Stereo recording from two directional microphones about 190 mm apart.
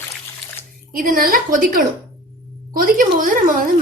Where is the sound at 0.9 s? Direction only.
50° right (ahead or behind).